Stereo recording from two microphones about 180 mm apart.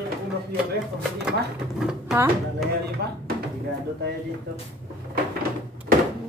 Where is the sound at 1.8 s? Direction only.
5° right (ahead or behind).